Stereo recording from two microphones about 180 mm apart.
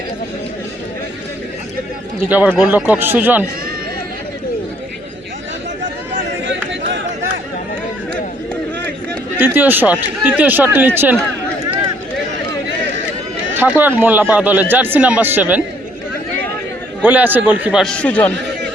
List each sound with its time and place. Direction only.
2.3 s speech: 10° right (ahead or behind)
6.4 s a sound: 85° right
9.4 s speech: 10° right (ahead or behind)
13.5 s speech: 10° right (ahead or behind)
17.0 s a man's voice: 10° right (ahead or behind); by 18.3 s 10° left (ahead or behind)